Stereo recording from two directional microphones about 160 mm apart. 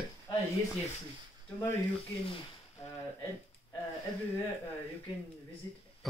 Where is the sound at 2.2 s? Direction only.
35° left (ahead or behind).